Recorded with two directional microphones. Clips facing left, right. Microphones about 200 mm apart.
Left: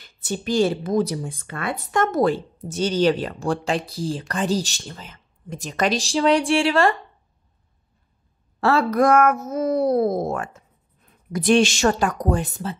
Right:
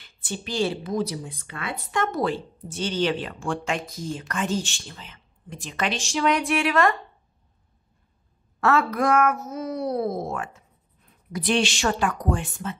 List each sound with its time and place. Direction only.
0.0 s speech: 40° left (ahead or behind)
8.5 s speech: 30° left (ahead or behind)